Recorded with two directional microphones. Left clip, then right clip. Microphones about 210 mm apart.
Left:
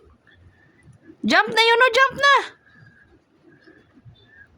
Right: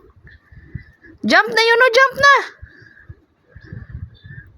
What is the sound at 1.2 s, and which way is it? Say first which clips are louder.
Speech: right 3 dB; 15° right (ahead or behind).